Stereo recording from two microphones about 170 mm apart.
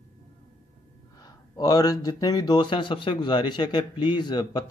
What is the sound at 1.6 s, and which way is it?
Speech, 20° left (ahead or behind).